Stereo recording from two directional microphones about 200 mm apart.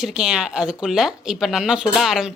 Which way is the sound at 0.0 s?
5° right (ahead or behind).